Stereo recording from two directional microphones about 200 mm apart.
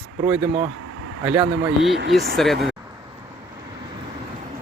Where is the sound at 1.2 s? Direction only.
5° right (ahead or behind).